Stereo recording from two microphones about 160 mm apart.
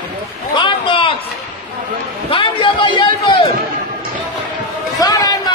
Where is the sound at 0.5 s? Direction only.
30° left (ahead or behind).